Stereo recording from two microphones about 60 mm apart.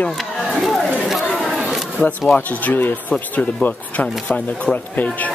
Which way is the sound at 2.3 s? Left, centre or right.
Left.